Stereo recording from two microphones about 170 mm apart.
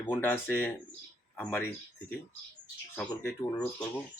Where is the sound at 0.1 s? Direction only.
10° left (ahead or behind).